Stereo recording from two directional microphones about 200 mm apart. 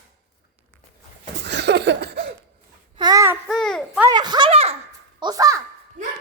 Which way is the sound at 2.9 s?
20° right (ahead or behind).